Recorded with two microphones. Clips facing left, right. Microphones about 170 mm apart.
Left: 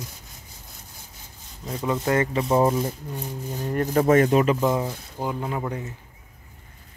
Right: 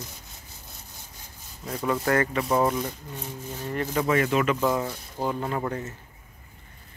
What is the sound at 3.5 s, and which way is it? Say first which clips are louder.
Speech: left 4 dB; 15° left (ahead or behind).